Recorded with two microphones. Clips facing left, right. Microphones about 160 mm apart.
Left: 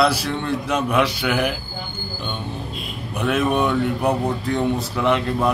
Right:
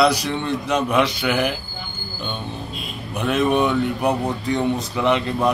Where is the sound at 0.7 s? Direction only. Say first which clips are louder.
Right 1 dB; 5° left (ahead or behind).